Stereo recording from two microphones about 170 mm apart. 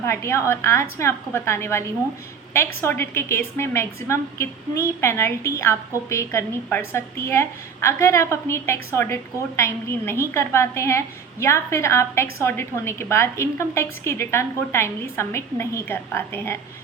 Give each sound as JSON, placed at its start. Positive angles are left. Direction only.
{"t": 0.0, "sound": "a woman's voice", "side_deg": 15}